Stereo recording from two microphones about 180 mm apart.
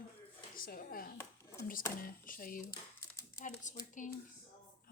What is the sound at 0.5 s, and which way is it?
Speech, 50° left (ahead or behind).